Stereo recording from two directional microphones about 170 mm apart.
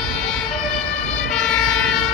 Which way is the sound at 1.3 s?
5° left (ahead or behind).